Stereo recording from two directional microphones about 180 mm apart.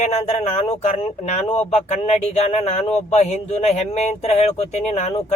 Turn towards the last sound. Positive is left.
turn(degrees=40)  # may be behind; listen again after turning